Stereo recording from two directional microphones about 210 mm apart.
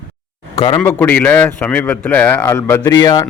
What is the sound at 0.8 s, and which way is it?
Speech, 10° left (ahead or behind).